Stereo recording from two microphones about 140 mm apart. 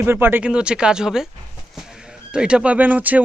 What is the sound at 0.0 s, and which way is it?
Speech, 15° right (ahead or behind).